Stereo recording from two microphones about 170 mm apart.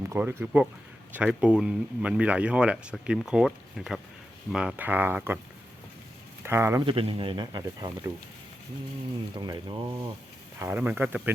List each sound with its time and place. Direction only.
0.1 s speech: 15° right (ahead or behind)
6.4 s speech: 15° right (ahead or behind)
6.8 s speech: 30° right (ahead or behind)
9.3 s speech: 25° right (ahead or behind)
10.6 s speech: 10° right (ahead or behind)